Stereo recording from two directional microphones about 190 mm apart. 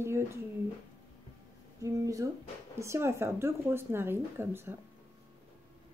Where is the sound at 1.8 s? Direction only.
15° right (ahead or behind).